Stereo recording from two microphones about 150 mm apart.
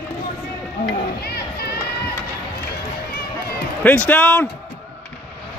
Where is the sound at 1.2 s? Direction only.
90° left.